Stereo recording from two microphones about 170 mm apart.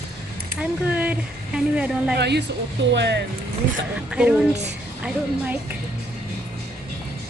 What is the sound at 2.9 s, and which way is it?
Speech, 90° right.